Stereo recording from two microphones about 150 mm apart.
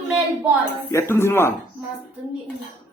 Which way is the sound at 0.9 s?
15° left (ahead or behind).